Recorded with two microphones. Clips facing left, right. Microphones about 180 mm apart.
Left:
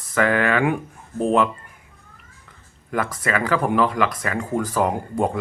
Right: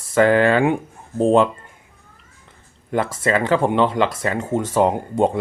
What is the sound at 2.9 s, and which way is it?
Speech, 25° right (ahead or behind).